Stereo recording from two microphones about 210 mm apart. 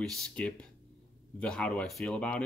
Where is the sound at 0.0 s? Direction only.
Centre (ahead or behind).